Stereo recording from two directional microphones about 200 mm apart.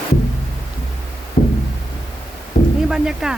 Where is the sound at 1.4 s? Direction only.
35° left (ahead or behind).